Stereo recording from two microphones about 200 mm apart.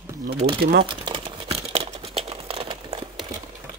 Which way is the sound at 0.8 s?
25° right (ahead or behind).